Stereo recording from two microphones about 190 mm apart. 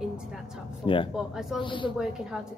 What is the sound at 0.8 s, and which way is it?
Speech, 25° left (ahead or behind).